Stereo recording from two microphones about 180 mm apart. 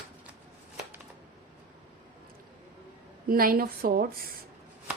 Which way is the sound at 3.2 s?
55° right (ahead or behind).